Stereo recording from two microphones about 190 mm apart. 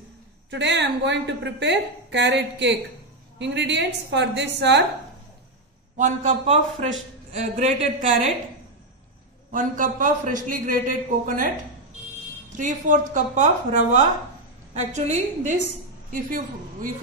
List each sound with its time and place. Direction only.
0.5 s a woman's voice: 65° right (ahead or behind)
5.9 s a woman's voice: 40° right (ahead or behind)
9.5 s a man's voice: 45° right (ahead or behind)
12.5 s a woman's voice: 45° right (ahead or behind)